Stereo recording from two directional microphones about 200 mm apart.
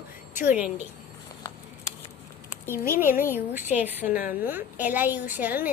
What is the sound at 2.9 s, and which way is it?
A woman's voice, 10° right (ahead or behind).